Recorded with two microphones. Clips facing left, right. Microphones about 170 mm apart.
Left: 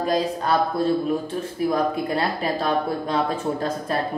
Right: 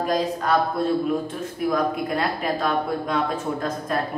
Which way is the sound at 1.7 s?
30° left (ahead or behind).